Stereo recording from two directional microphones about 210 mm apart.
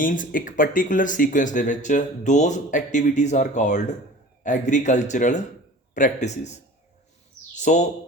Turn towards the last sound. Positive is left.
turn(degrees=35)  # may be behind; listen again after turning